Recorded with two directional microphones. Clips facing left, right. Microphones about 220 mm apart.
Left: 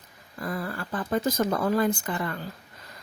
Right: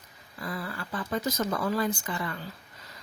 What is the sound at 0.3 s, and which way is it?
Speech, 50° left (ahead or behind).